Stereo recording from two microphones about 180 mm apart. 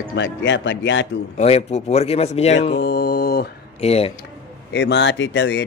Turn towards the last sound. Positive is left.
turn(degrees=80)